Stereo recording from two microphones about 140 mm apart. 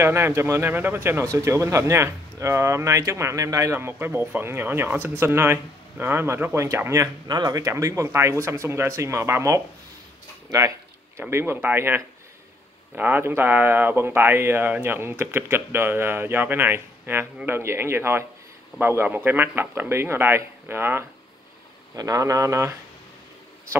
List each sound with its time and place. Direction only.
0.0 s speech: 15° right (ahead or behind)
11.1 s speech: 15° right (ahead or behind)